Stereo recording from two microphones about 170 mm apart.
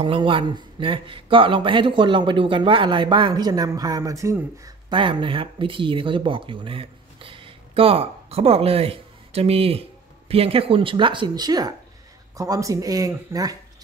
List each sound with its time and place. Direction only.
0.0 s a man's voice: 30° right (ahead or behind)